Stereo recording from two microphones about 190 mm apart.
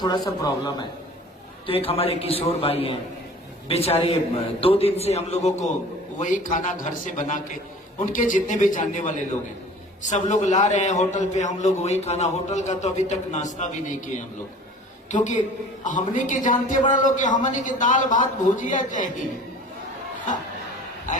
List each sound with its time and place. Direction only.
0.0 s a man's voice: 20° left (ahead or behind); by 14.1 s 40° left (ahead or behind)
15.1 s a man's voice: 40° left (ahead or behind)